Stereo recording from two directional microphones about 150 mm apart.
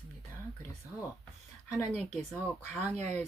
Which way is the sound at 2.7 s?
10° left (ahead or behind).